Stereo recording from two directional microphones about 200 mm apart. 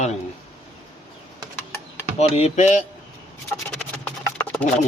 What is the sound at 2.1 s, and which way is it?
Speech, 30° left (ahead or behind).